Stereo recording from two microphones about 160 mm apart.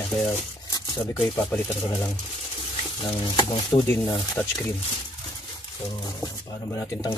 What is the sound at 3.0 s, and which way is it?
Speech, 30° left (ahead or behind).